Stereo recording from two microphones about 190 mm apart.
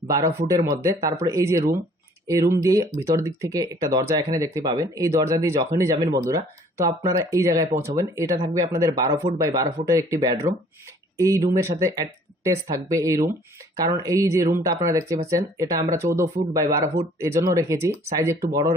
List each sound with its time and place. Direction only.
0.4 s speech: 15° right (ahead or behind)